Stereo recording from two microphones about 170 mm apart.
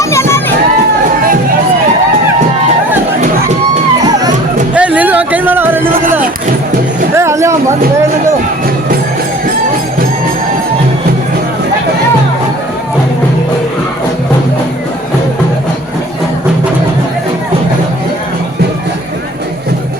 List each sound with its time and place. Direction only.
0.0 s crowd: 15° left (ahead or behind)
4.7 s music: 10° right (ahead or behind)
7.2 s a sound: 15° right (ahead or behind)